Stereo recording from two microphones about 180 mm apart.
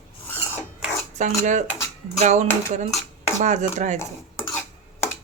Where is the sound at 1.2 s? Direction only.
40° right (ahead or behind).